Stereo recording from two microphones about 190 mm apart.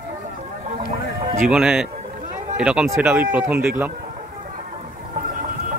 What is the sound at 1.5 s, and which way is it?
A man's voice, 5° right (ahead or behind).